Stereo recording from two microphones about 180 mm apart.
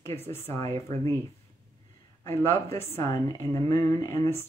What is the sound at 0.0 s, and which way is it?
Speech, 15° left (ahead or behind).